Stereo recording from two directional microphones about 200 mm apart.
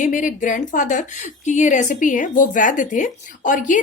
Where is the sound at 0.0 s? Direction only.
40° left (ahead or behind).